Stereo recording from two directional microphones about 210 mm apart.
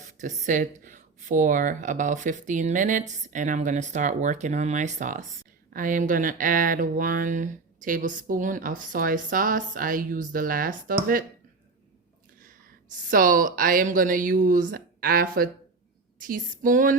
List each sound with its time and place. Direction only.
0.2 s speech: 40° right (ahead or behind)
13.1 s speech: 40° right (ahead or behind)